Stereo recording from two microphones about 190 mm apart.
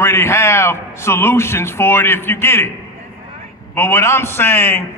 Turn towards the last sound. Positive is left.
turn(degrees=10)  # may be behind; listen again after turning